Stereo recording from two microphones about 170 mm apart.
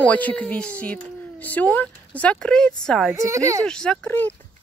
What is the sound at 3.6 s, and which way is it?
Speech, 5° left (ahead or behind).